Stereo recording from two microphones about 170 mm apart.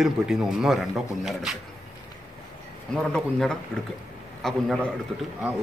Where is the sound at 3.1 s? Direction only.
5° left (ahead or behind).